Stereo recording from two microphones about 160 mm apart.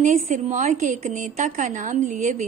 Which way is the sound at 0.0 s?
50° right (ahead or behind).